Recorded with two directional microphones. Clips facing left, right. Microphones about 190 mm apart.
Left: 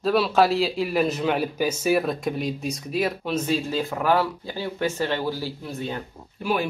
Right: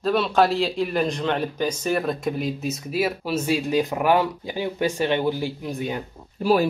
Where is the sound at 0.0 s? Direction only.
Centre (ahead or behind); by 6.0 s 15° right (ahead or behind).